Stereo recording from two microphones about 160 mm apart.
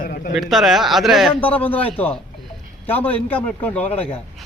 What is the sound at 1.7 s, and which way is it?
A man's voice, 10° left (ahead or behind).